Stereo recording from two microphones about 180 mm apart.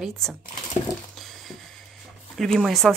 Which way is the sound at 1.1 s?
Centre (ahead or behind).